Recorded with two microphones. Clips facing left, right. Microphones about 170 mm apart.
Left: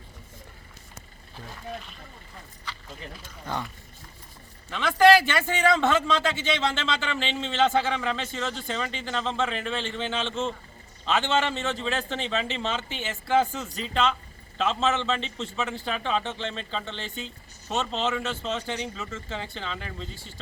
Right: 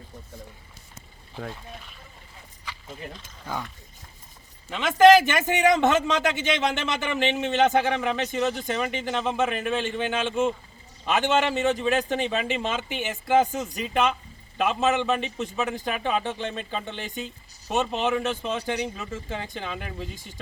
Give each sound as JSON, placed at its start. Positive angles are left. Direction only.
{"t": 3.4, "sound": "speech", "side_deg": -5}
{"t": 4.7, "sound": "a man's voice", "side_deg": -20}